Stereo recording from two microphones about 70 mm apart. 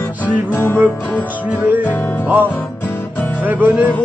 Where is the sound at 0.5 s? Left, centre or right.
Left.